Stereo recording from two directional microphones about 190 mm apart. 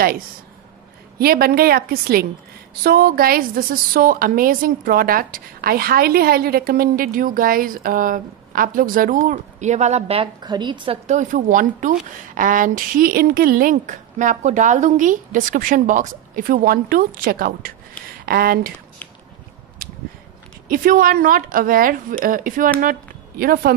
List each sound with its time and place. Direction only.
1.2 s a woman's voice: 55° right (ahead or behind); by 11.0 s 25° right (ahead or behind)
11.1 s a woman's voice: 40° right (ahead or behind)
20.6 s a woman's voice: 45° right (ahead or behind)